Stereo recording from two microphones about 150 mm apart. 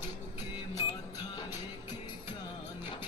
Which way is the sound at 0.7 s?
25° left (ahead or behind).